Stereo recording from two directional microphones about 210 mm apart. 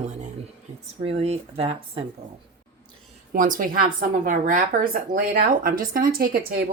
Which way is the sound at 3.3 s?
40° right (ahead or behind).